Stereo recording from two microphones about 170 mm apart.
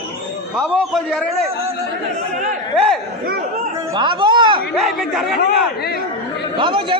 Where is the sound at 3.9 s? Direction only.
30° right (ahead or behind).